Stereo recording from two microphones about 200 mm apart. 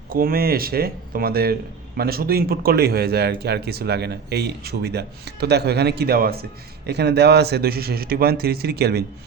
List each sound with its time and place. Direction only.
0.1 s speech: 45° right (ahead or behind)